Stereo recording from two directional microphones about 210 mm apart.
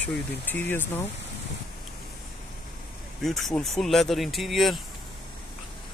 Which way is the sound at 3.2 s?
Centre (ahead or behind).